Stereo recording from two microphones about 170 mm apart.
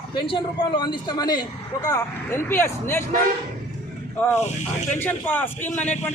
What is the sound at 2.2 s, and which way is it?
Speech, 15° left (ahead or behind).